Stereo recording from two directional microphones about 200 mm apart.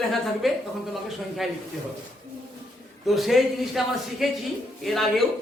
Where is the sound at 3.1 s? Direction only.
Centre (ahead or behind).